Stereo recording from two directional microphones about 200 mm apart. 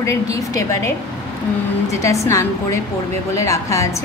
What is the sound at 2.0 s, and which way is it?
A woman's voice, 15° left (ahead or behind).